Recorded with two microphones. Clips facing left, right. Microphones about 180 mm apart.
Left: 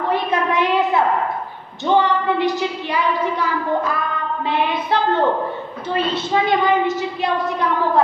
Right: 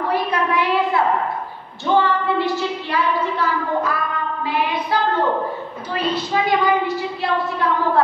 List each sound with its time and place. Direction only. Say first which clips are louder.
0.1 s a sound: left 1 dB; 20° left (ahead or behind)
4.5 s child singing: left 2 dB; 25° left (ahead or behind)
6.1 s a woman's voice: even; 25° left (ahead or behind)